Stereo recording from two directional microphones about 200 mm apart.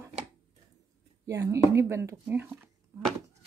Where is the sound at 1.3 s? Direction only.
15° right (ahead or behind).